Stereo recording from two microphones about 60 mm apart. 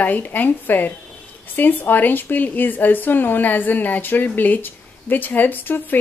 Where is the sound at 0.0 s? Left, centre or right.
Left.